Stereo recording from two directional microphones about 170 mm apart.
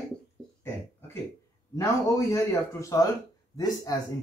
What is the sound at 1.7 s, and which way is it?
Speech, 20° left (ahead or behind).